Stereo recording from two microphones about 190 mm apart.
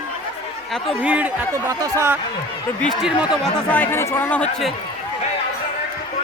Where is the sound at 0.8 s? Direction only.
5° right (ahead or behind).